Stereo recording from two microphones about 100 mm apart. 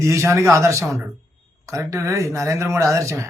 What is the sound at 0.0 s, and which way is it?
A man's voice, 30° right (ahead or behind).